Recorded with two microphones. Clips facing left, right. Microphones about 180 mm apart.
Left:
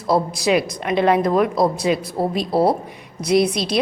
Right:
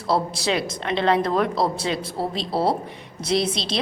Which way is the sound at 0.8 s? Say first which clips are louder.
Left 4 dB; 15° left (ahead or behind).